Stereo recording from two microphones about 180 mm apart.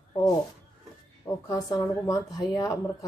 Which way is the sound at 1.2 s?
20° left (ahead or behind).